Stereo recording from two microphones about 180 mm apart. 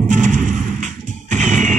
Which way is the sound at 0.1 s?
45° right (ahead or behind).